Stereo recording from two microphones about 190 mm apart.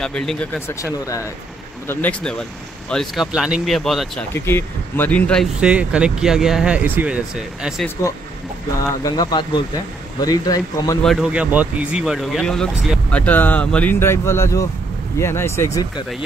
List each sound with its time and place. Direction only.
0.0 s speech: 5° left (ahead or behind)
4.3 s speech: 10° left (ahead or behind)
9.0 s speech: 20° left (ahead or behind)
11.1 s speech: 5° right (ahead or behind); by 15.9 s 15° left (ahead or behind)